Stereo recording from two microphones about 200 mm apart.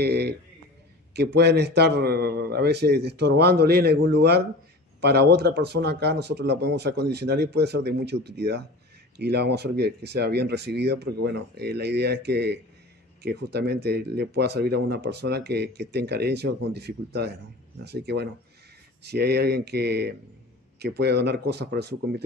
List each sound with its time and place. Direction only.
0.0 s speech: 55° right (ahead or behind)